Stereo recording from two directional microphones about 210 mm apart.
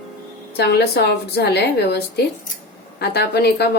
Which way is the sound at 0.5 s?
50° left (ahead or behind).